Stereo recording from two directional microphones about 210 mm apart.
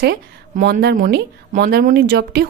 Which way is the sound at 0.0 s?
50° right (ahead or behind).